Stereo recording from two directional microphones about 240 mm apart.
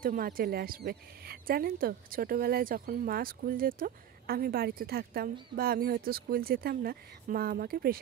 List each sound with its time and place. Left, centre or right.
0.0 s speech: right